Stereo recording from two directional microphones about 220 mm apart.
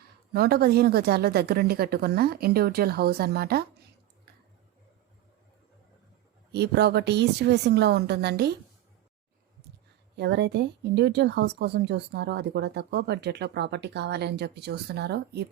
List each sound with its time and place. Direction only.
0.3 s speech: 45° right (ahead or behind)
6.5 s speech: 50° right (ahead or behind)
10.2 s speech: 50° right (ahead or behind)